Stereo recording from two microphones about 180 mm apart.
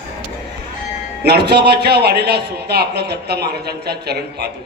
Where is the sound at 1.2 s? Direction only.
65° right (ahead or behind).